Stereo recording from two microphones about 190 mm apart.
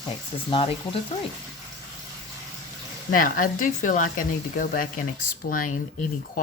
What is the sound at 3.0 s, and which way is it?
Speech, 50° left (ahead or behind).